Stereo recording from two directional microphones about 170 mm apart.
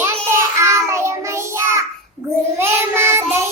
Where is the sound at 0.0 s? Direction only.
15° right (ahead or behind).